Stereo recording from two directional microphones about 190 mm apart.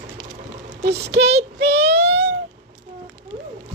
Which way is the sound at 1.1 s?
65° right (ahead or behind).